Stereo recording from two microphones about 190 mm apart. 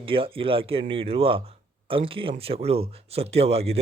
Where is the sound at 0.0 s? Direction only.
30° right (ahead or behind).